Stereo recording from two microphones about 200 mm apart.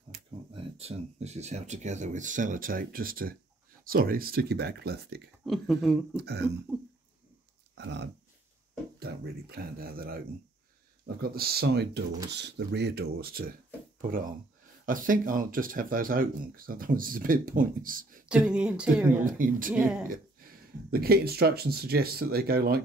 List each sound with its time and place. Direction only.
0.5 s speech: 30° right (ahead or behind); by 5.2 s 55° right (ahead or behind)
5.4 s speech: centre (ahead or behind)
6.1 s speech: 55° right (ahead or behind)
7.7 s speech: 60° right (ahead or behind); by 18.2 s 45° right (ahead or behind)
18.3 s speech: 5° right (ahead or behind)
19.2 s speech: 40° right (ahead or behind)